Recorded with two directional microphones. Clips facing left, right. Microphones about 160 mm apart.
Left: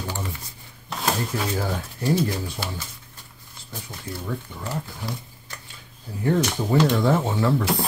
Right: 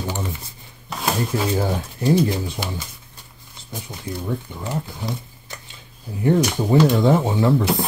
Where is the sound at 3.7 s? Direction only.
15° right (ahead or behind).